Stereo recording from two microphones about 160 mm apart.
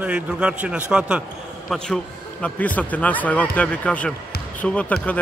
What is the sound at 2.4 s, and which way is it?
Speech, 10° left (ahead or behind).